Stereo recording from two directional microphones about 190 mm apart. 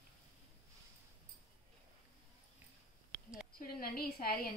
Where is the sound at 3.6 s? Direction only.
50° left (ahead or behind).